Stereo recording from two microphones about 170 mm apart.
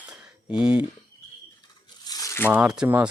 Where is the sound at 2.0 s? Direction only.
20° left (ahead or behind).